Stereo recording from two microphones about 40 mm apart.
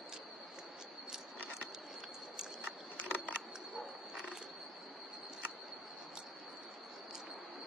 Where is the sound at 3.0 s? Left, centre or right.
Left.